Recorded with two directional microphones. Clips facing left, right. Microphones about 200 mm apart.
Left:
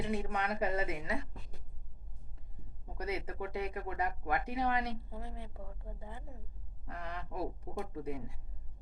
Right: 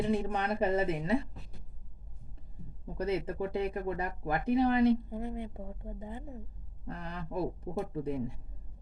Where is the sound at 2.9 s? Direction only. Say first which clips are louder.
Right 6 dB; 30° right (ahead or behind).